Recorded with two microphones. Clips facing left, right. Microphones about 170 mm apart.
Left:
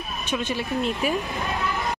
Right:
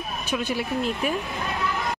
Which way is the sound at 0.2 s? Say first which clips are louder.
Even; 10° right (ahead or behind).